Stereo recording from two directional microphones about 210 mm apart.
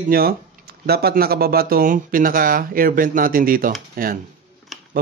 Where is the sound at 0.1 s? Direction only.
45° right (ahead or behind).